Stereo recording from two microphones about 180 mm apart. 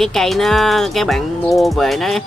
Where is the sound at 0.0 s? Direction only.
Centre (ahead or behind).